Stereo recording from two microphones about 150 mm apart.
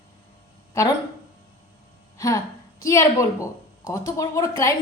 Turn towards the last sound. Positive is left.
turn(degrees=20)  # may be behind; listen again after turning